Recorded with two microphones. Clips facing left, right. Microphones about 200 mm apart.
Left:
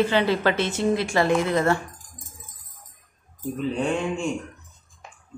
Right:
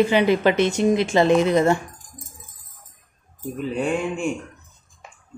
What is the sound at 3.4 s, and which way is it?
Speech, 10° right (ahead or behind).